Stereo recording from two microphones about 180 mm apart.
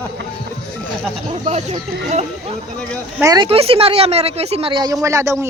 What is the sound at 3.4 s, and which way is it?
Speech, 30° right (ahead or behind).